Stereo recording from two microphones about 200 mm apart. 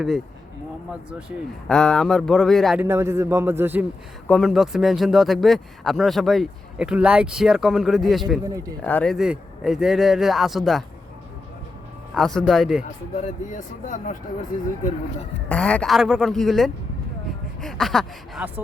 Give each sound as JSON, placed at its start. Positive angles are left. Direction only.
{"t": 1.6, "sound": "speech", "side_deg": 5}
{"t": 2.8, "sound": "a man's voice", "side_deg": -15}
{"t": 4.3, "sound": "speech", "side_deg": 0}
{"t": 9.1, "sound": "speech", "side_deg": -5}
{"t": 12.1, "sound": "speech", "side_deg": 0}
{"t": 13.1, "sound": "speech", "side_deg": 40}
{"t": 15.4, "sound": "speech", "side_deg": 5}